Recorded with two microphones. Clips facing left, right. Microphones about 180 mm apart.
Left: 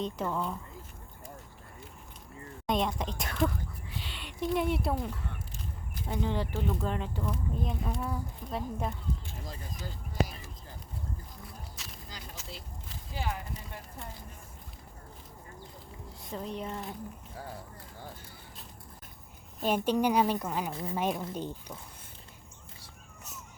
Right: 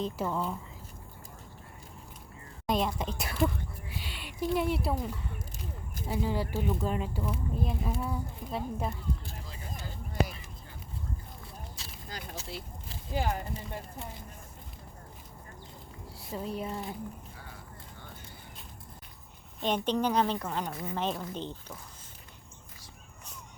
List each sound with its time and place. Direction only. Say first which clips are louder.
0.0 s speech: right 1 dB; 5° right (ahead or behind)
2.6 s speech: even; centre (ahead or behind)
12.0 s a sound: right 7 dB; 55° right (ahead or behind)
13.1 s speech: right 5 dB; 45° right (ahead or behind)
16.2 s speech: right 2 dB; 5° right (ahead or behind)
19.6 s a woman's voice: left 2 dB; 10° left (ahead or behind)